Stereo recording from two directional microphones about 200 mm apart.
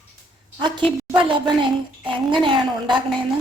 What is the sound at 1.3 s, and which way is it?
A woman's voice, 25° right (ahead or behind).